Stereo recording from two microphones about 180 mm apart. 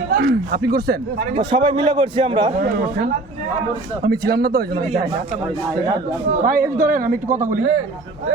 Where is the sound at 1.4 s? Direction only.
25° right (ahead or behind).